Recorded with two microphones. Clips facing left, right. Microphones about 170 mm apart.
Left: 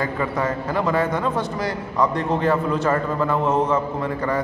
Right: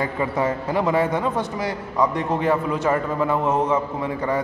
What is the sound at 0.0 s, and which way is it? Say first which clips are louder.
A man's voice: right 1 dB; 25° right (ahead or behind).